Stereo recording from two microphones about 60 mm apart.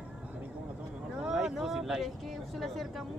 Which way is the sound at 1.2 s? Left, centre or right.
Centre.